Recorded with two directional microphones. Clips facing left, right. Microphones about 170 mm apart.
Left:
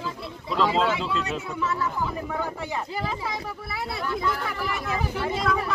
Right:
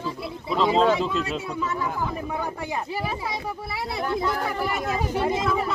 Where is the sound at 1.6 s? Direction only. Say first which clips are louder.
Left 2 dB; 15° right (ahead or behind).